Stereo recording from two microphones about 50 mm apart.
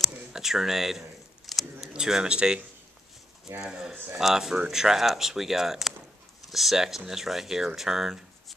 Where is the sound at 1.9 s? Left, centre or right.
Centre.